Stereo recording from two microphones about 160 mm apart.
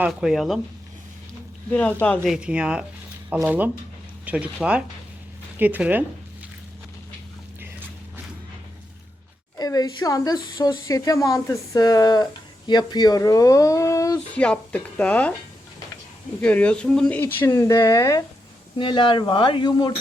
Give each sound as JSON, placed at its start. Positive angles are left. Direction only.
{"t": 0.0, "sound": "speech", "side_deg": -5}
{"t": 1.7, "sound": "speech", "side_deg": 10}
{"t": 2.2, "sound": "speech", "side_deg": -5}
{"t": 9.6, "sound": "speech", "side_deg": 25}
{"t": 14.3, "sound": "speech", "side_deg": 10}
{"t": 16.4, "sound": "speech", "side_deg": 10}
{"t": 17.5, "sound": "speech", "side_deg": 25}